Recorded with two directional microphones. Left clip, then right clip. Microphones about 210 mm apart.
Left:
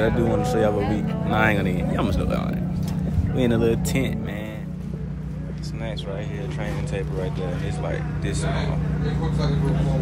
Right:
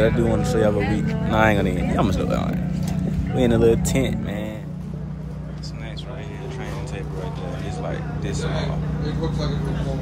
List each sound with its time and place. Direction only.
0.2 s speech: 15° left (ahead or behind)
7.8 s speech: 15° right (ahead or behind)